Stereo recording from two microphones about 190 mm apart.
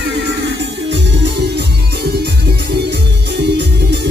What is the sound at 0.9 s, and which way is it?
Music, 65° right (ahead or behind).